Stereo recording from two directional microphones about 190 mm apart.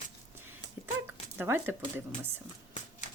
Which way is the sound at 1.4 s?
10° right (ahead or behind).